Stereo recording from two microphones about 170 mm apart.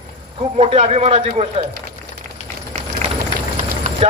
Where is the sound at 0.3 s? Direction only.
35° right (ahead or behind).